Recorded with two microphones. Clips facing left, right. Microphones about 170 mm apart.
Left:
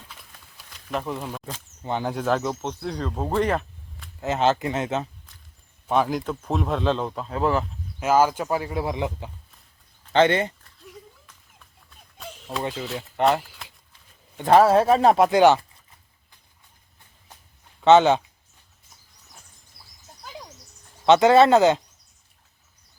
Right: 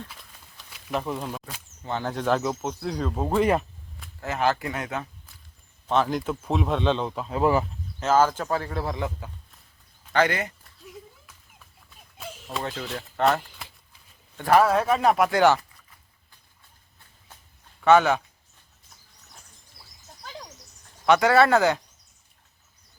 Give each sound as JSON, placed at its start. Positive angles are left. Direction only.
{"t": 0.7, "sound": "a sound", "side_deg": -5}
{"t": 1.8, "sound": "speech", "side_deg": 15}
{"t": 4.2, "sound": "speech", "side_deg": 20}
{"t": 5.9, "sound": "speech", "side_deg": 10}
{"t": 6.1, "sound": "speech", "side_deg": 0}
{"t": 7.9, "sound": "speech", "side_deg": 10}
{"t": 11.9, "sound": "a sound", "side_deg": -5}
{"t": 12.7, "sound": "speech", "side_deg": 0}
{"t": 13.4, "sound": "a sound", "side_deg": 5}
{"t": 14.3, "sound": "speech", "side_deg": 25}
{"t": 17.7, "sound": "speech", "side_deg": 25}
{"t": 21.1, "sound": "speech", "side_deg": 20}